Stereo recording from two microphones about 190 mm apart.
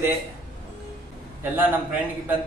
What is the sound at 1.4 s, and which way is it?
Speech, 10° right (ahead or behind).